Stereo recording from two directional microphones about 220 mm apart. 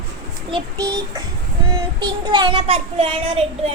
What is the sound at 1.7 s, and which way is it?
Child singing, 20° right (ahead or behind).